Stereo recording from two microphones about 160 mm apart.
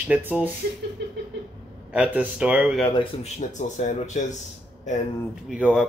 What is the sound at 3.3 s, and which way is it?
Speech, 50° left (ahead or behind).